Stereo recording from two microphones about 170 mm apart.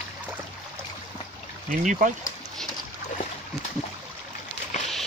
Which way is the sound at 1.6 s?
50° right (ahead or behind).